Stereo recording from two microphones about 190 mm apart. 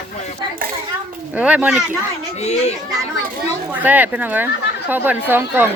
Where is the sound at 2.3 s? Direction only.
35° left (ahead or behind).